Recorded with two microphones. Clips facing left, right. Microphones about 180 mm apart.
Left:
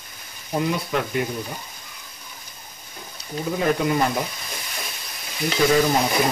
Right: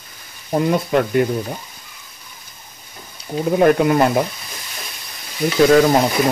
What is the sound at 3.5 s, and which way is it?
Speech, 60° right (ahead or behind).